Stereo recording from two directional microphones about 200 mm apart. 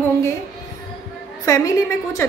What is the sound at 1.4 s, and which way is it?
Speech, 15° left (ahead or behind).